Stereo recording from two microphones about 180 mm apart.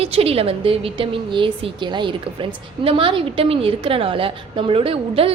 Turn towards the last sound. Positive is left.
turn(degrees=-30)  # may be behind; listen again after turning